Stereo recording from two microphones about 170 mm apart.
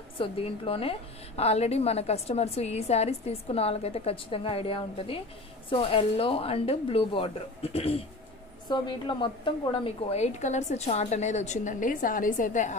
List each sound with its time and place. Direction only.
0.2 s a woman's voice: 35° left (ahead or behind); by 12.7 s 50° left (ahead or behind)